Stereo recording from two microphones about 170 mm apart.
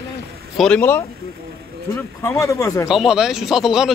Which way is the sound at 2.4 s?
15° left (ahead or behind).